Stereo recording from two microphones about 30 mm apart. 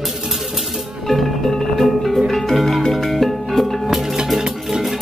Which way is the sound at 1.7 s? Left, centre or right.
Centre.